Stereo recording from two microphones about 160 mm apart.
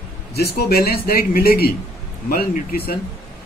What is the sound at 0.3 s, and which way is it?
A man's voice, 80° left.